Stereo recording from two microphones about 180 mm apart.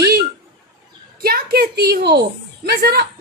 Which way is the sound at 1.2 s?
55° right (ahead or behind).